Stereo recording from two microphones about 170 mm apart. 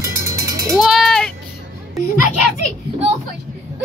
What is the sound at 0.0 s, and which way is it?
Children playing, 15° right (ahead or behind).